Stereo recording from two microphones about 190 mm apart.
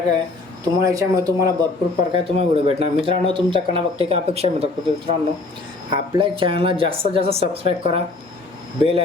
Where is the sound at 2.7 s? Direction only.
30° right (ahead or behind).